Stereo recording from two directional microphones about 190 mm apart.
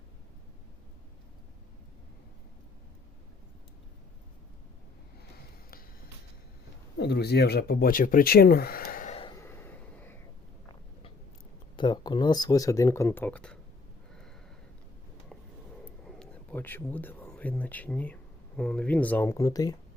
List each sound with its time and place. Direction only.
7.0 s speech: 60° left (ahead or behind)
9.4 s a sound: 10° left (ahead or behind)
11.8 s speech: 20° left (ahead or behind); by 13.6 s 5° left (ahead or behind)
15.8 s speech: 5° left (ahead or behind); by 19.7 s 20° left (ahead or behind)